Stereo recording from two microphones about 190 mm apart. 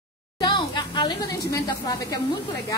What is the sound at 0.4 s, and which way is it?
A woman's voice, 25° left (ahead or behind).